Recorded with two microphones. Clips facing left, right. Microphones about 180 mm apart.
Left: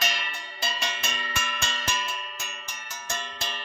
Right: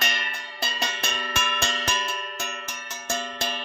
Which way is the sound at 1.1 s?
70° right (ahead or behind).